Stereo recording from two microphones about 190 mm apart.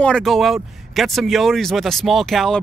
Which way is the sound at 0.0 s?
5° left (ahead or behind).